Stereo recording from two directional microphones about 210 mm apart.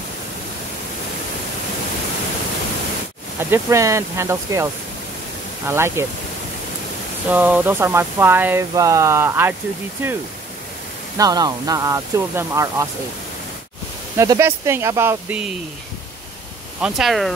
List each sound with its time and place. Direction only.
3.3 s speech: 10° right (ahead or behind)
5.7 s speech: 10° right (ahead or behind)
7.2 s speech: 5° right (ahead or behind)
11.1 s speech: 20° right (ahead or behind)
14.1 s speech: 15° right (ahead or behind)
16.8 s speech: centre (ahead or behind)